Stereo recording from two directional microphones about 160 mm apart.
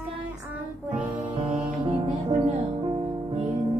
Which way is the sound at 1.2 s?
35° right (ahead or behind).